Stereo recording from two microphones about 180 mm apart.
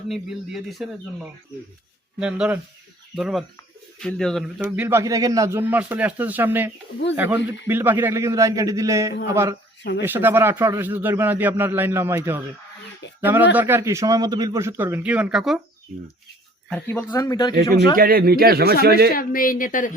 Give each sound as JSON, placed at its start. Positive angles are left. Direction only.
{"t": 0.1, "sound": "speech", "side_deg": 0}
{"t": 4.6, "sound": "a man's voice", "side_deg": -15}
{"t": 16.6, "sound": "speech", "side_deg": 10}
{"t": 17.1, "sound": "speech", "side_deg": 20}
{"t": 17.9, "sound": "speech", "side_deg": -55}
{"t": 19.1, "sound": "a woman's voice", "side_deg": 50}